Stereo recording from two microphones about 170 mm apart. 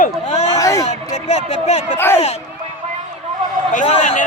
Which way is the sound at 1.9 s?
15° left (ahead or behind).